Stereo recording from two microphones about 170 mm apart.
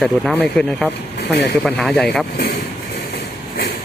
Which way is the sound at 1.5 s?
5° left (ahead or behind).